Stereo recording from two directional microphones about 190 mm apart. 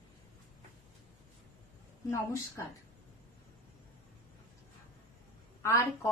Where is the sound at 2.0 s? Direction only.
15° left (ahead or behind).